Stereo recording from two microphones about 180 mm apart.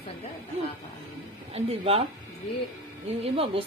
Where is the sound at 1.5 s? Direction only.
30° right (ahead or behind).